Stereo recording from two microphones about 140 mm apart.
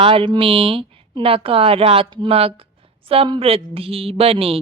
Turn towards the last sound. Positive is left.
turn(degrees=-45)  # may be behind; listen again after turning